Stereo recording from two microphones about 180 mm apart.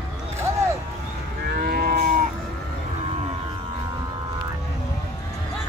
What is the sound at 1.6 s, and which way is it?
Moo, 55° right (ahead or behind).